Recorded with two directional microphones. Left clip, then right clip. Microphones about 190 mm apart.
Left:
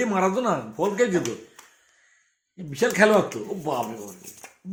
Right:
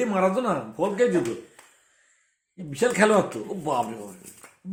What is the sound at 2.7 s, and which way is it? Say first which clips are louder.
Speech: left 1 dB; 15° left (ahead or behind).